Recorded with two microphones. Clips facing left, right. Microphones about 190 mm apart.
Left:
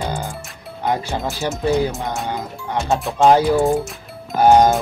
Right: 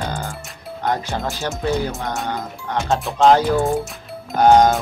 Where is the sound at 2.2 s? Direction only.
15° left (ahead or behind).